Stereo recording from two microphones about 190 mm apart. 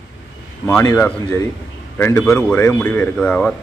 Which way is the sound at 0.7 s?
15° left (ahead or behind).